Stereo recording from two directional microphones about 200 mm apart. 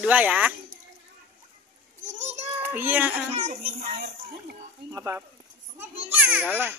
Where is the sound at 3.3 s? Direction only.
35° right (ahead or behind).